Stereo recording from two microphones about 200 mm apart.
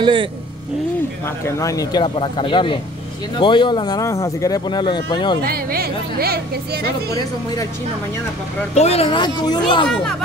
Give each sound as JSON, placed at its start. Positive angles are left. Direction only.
{"t": 0.0, "sound": "speech", "side_deg": -25}
{"t": 1.4, "sound": "speech", "side_deg": 15}
{"t": 5.4, "sound": "speech", "side_deg": -50}
{"t": 8.7, "sound": "speech", "side_deg": 30}